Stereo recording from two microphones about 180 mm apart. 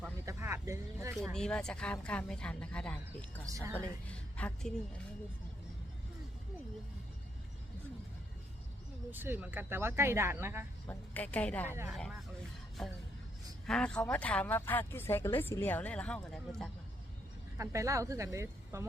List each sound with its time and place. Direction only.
0.3 s a sound: 15° right (ahead or behind)
1.1 s speech: centre (ahead or behind)
3.5 s speech: 15° right (ahead or behind)
3.8 s a woman's voice: 5° left (ahead or behind)
9.0 s speech: 10° right (ahead or behind)
10.8 s a woman's voice: 10° left (ahead or behind)
17.6 s speech: 15° right (ahead or behind)